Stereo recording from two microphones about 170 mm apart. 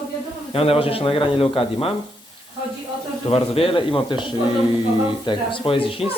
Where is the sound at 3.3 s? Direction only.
35° left (ahead or behind).